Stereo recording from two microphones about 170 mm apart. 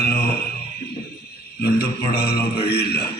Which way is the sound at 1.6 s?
65° left (ahead or behind).